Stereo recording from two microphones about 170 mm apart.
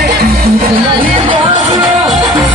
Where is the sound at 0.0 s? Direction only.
65° right (ahead or behind).